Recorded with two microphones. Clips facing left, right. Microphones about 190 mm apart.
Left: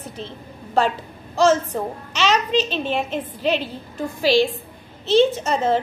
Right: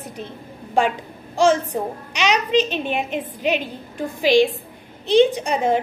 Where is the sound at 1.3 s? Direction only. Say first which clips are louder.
Even; 15° right (ahead or behind).